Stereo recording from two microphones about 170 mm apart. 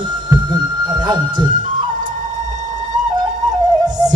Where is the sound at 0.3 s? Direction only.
25° right (ahead or behind).